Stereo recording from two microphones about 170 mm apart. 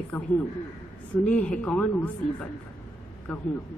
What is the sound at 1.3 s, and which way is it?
Speech, 5° left (ahead or behind).